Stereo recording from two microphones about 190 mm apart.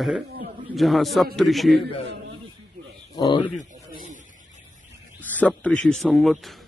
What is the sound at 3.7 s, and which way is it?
Snake, 40° right (ahead or behind).